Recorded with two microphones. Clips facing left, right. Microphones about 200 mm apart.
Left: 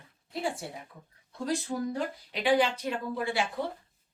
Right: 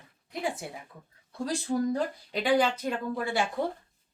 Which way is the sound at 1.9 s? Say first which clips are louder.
Right 4 dB; 40° right (ahead or behind).